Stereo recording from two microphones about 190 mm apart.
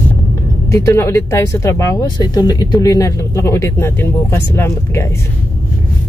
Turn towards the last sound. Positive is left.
turn(degrees=15)  # may be behind; listen again after turning